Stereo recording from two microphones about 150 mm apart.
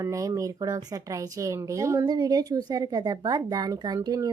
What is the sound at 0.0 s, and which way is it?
Speech, 20° right (ahead or behind).